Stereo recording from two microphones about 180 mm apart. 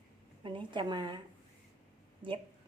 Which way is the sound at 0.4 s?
25° right (ahead or behind).